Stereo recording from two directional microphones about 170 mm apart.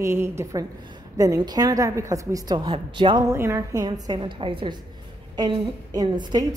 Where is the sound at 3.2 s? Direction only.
15° right (ahead or behind).